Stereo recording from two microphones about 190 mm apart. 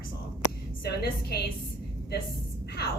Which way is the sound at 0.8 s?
55° left (ahead or behind).